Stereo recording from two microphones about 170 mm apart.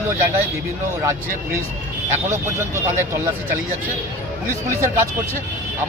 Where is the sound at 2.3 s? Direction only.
15° right (ahead or behind).